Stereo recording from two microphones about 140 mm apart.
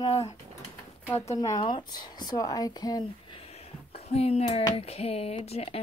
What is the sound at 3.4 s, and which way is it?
Speech, 45° left (ahead or behind).